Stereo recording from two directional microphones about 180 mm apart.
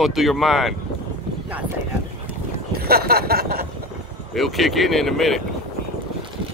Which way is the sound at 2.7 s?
60° right (ahead or behind).